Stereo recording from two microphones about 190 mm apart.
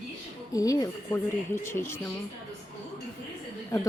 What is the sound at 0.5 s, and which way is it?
A woman's voice, 20° left (ahead or behind).